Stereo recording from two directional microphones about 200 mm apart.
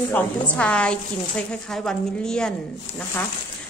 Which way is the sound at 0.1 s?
5° left (ahead or behind).